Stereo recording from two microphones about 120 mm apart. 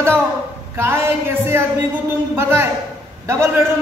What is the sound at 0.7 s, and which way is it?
A man's voice, 20° right (ahead or behind).